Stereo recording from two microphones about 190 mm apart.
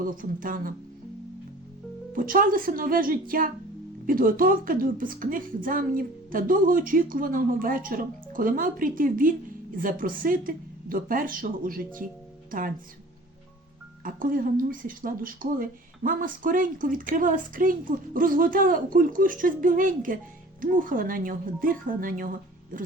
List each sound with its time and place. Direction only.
0.0 s speech: 45° right (ahead or behind)
2.1 s speech: 45° right (ahead or behind)
14.0 s speech: 45° right (ahead or behind)